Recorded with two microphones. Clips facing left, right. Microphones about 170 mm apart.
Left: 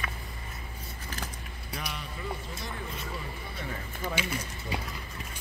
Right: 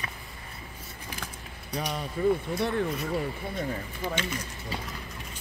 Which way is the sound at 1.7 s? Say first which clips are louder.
Right 7 dB; 35° right (ahead or behind).